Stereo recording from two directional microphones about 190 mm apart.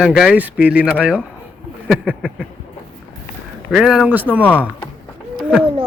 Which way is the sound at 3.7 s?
5° right (ahead or behind).